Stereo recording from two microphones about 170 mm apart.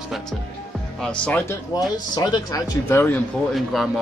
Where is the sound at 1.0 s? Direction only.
5° left (ahead or behind).